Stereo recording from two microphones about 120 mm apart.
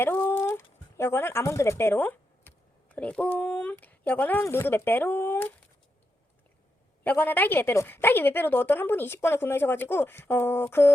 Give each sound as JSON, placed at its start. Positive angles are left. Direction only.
{"t": 0.0, "sound": "a woman's voice", "side_deg": 20}
{"t": 7.0, "sound": "a woman's voice", "side_deg": 15}